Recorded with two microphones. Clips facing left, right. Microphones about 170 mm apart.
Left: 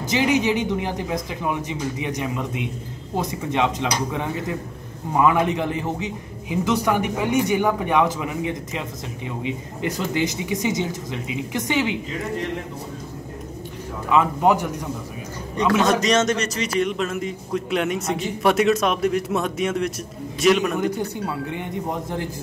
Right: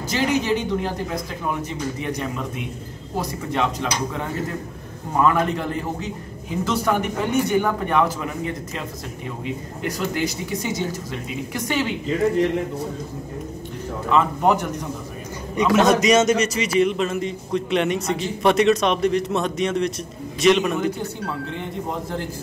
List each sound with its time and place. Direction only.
0.1 s a man's voice: 20° left (ahead or behind)
14.0 s a man's voice: 10° left (ahead or behind)
15.9 s a man's voice: 10° right (ahead or behind)